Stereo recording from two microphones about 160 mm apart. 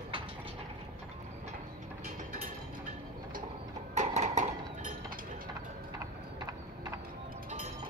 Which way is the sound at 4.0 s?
45° right (ahead or behind).